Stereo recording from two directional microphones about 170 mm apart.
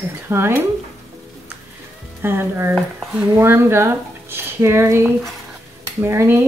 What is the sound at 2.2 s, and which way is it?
Speech, 15° right (ahead or behind).